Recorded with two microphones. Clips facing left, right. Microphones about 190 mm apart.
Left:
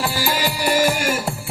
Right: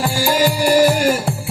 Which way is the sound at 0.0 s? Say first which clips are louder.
Right 6 dB; 40° right (ahead or behind).